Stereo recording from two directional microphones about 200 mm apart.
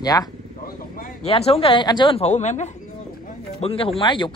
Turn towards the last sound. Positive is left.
turn(degrees=25)  # may be behind; listen again after turning